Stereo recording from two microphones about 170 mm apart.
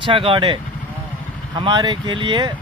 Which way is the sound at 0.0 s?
30° right (ahead or behind).